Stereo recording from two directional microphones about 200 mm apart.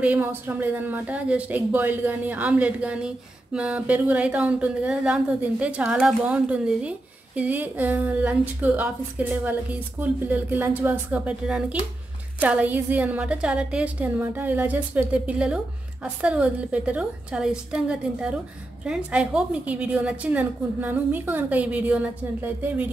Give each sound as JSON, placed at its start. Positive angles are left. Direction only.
{"t": 0.0, "sound": "a woman's voice", "side_deg": -10}